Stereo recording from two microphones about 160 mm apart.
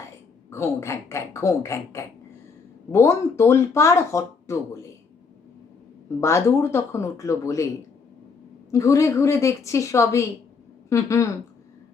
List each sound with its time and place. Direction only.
0.5 s speech: 15° left (ahead or behind)
6.1 s speech: 15° left (ahead or behind)
8.7 s a woman's voice: 20° left (ahead or behind)